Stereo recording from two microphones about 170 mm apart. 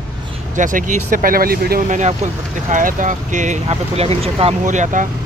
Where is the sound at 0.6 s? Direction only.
50° right (ahead or behind).